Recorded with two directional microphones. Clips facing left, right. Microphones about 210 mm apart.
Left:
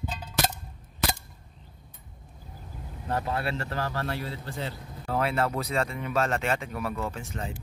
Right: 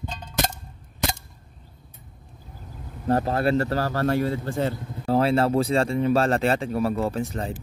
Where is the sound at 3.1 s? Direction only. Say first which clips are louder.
Right 9 dB; 40° right (ahead or behind).